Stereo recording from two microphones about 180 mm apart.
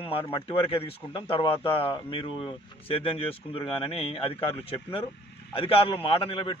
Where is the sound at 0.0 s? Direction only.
30° left (ahead or behind).